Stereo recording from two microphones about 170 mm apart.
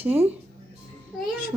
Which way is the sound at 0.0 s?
10° right (ahead or behind).